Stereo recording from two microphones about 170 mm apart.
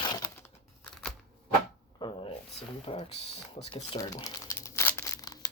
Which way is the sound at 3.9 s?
25° left (ahead or behind).